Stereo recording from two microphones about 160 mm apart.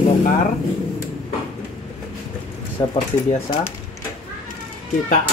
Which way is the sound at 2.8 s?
25° left (ahead or behind).